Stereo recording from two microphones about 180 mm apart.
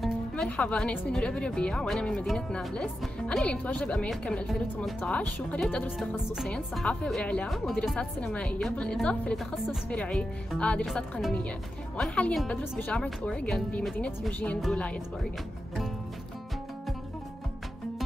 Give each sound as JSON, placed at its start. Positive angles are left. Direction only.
{"t": 0.0, "sound": "a woman's voice", "side_deg": 5}